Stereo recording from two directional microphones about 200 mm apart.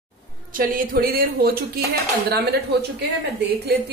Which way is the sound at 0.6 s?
45° right (ahead or behind).